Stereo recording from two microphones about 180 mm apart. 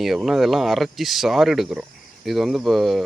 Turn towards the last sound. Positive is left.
turn(degrees=0)  # may be behind; listen again after turning